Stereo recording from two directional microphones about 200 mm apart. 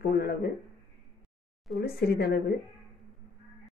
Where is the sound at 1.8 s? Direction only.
50° left (ahead or behind).